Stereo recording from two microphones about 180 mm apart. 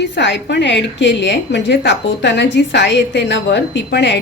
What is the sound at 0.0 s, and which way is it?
A woman's voice, 75° left (ahead or behind).